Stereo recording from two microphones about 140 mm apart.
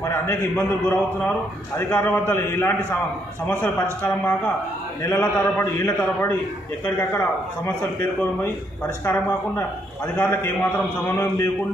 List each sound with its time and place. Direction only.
0.0 s a man's voice: 20° left (ahead or behind)
3.8 s a man's voice: 15° left (ahead or behind)